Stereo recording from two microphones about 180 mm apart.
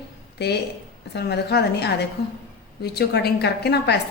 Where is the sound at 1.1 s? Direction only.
65° left (ahead or behind).